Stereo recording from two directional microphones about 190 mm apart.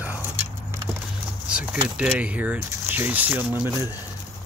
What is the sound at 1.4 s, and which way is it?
Speech, 5° right (ahead or behind).